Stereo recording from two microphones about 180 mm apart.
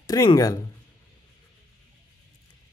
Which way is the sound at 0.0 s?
20° left (ahead or behind).